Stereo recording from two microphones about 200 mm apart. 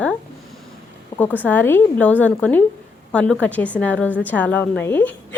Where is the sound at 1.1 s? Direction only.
20° left (ahead or behind).